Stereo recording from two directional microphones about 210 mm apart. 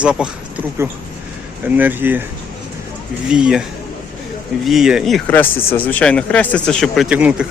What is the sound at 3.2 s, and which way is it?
Speech, 5° right (ahead or behind).